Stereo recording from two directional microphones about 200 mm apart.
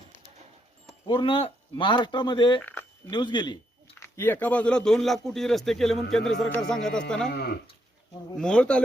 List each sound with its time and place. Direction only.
1.0 s speech: 25° left (ahead or behind)
2.6 s a sound: 5° left (ahead or behind)
3.1 s speech: 20° left (ahead or behind)
4.0 s speech: 10° left (ahead or behind)
7.3 s speech: 55° left (ahead or behind)
8.4 s speech: 5° left (ahead or behind)